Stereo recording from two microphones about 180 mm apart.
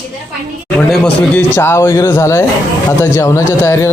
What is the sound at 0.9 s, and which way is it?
A man's voice, 10° left (ahead or behind).